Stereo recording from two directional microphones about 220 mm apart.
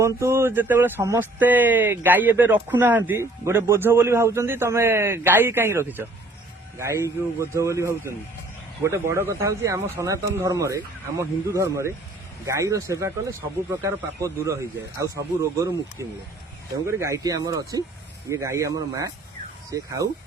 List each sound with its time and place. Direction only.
0.0 s speech: 10° right (ahead or behind)